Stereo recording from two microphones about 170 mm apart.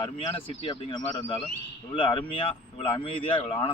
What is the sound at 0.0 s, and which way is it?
A man's voice, 30° left (ahead or behind).